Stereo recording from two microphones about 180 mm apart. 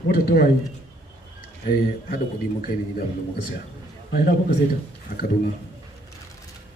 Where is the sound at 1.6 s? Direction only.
55° left (ahead or behind).